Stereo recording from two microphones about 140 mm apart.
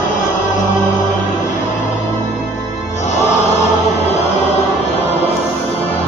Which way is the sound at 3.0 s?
55° left (ahead or behind).